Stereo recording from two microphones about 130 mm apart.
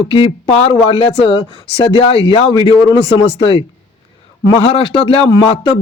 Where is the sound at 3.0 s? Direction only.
45° left (ahead or behind).